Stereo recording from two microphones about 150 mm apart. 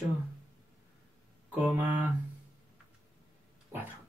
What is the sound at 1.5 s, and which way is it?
Speech, 10° right (ahead or behind).